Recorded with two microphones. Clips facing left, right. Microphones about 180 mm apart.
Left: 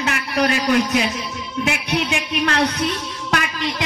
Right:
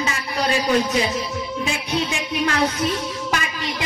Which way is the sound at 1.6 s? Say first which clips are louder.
Left 4 dB; 70° left (ahead or behind).